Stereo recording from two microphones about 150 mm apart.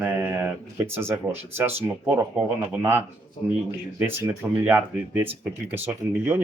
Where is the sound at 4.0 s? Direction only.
15° right (ahead or behind).